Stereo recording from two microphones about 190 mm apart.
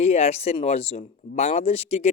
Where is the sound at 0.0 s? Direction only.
35° left (ahead or behind).